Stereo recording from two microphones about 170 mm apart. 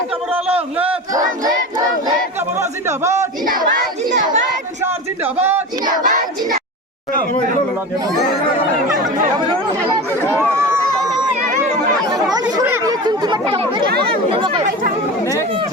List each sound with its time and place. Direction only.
0.4 s a man's voice: 10° right (ahead or behind)
2.6 s a man's voice: 15° right (ahead or behind)
4.8 s a sound: 10° right (ahead or behind)
5.8 s child singing: 50° right (ahead or behind)
10.3 s chatter: 15° right (ahead or behind)
13.8 s speech: 65° right (ahead or behind)
14.3 s speech: 30° right (ahead or behind)